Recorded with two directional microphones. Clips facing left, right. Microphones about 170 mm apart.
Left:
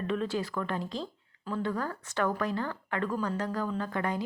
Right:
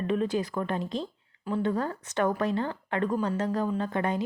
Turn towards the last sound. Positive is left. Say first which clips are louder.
# right 3 dB
turn(degrees=-20)  # may be behind; listen again after turning